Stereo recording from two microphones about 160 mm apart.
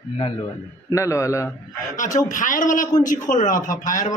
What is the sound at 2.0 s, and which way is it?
Speech, 50° left (ahead or behind).